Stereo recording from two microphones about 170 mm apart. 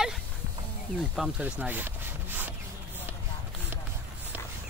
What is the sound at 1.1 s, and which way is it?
Speech, 5° right (ahead or behind).